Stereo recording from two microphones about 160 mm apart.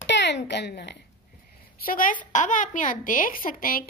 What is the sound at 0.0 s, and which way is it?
Speech, 90° left.